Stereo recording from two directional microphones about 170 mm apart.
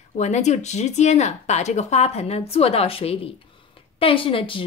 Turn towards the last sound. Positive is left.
turn(degrees=30)  # may be behind; listen again after turning